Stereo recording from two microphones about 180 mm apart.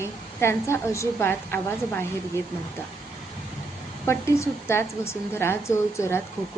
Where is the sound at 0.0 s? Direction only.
15° left (ahead or behind).